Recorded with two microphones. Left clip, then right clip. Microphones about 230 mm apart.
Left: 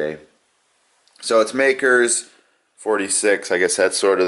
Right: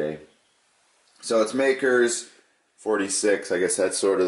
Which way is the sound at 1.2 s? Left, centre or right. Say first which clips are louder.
Left 6 dB; centre.